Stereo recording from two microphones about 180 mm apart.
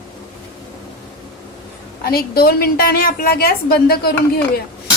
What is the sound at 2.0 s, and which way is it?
A woman's voice, 60° left (ahead or behind).